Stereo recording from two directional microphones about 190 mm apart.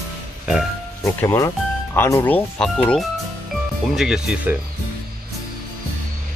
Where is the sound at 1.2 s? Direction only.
15° left (ahead or behind); by 4.6 s 5° right (ahead or behind).